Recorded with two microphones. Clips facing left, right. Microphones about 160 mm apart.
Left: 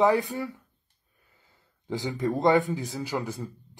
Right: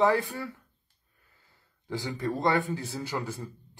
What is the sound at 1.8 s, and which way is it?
Speech, 20° left (ahead or behind).